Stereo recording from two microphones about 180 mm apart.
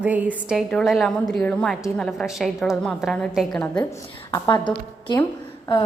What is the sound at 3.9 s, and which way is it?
A woman's voice, 20° left (ahead or behind).